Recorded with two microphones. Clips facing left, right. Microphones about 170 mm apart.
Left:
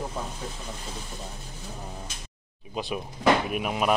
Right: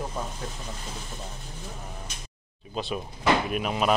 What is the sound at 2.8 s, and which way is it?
Speech, 15° left (ahead or behind).